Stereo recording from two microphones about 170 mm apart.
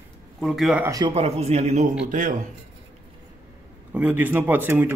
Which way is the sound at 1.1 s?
35° right (ahead or behind).